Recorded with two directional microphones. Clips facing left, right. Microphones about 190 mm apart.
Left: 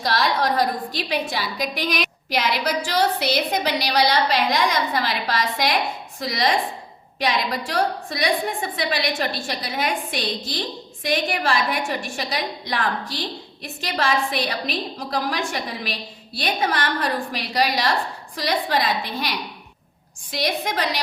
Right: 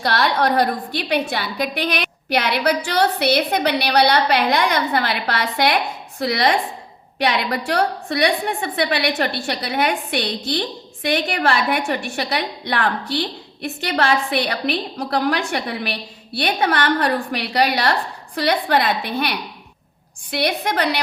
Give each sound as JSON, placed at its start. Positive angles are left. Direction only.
{"t": 0.0, "sound": "a woman's voice", "side_deg": -60}